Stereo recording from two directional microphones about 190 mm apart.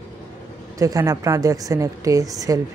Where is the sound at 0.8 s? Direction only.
15° right (ahead or behind).